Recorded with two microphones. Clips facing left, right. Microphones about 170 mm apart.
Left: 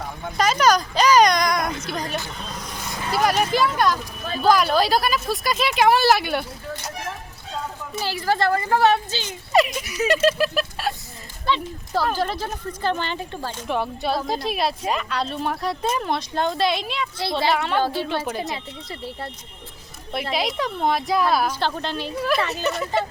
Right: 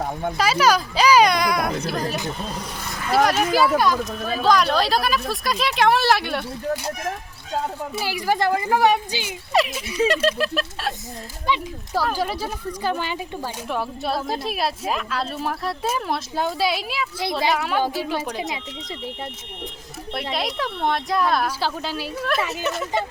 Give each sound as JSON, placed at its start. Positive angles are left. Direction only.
{"t": 0.0, "sound": "a sound", "side_deg": -40}
{"t": 0.3, "sound": "speech", "side_deg": -5}
{"t": 3.2, "sound": "speech", "side_deg": -5}
{"t": 7.9, "sound": "speech", "side_deg": -15}
{"t": 9.5, "sound": "speech", "side_deg": 0}
{"t": 11.4, "sound": "speech", "side_deg": -10}
{"t": 20.3, "sound": "speech", "side_deg": 0}